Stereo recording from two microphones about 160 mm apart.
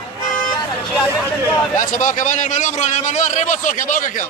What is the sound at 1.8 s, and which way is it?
A man's voice, 55° left (ahead or behind).